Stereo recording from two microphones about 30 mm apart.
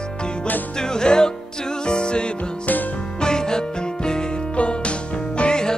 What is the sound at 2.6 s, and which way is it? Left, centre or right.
Music, left.